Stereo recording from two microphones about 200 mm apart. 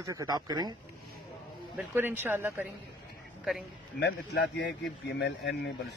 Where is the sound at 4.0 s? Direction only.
60° left (ahead or behind).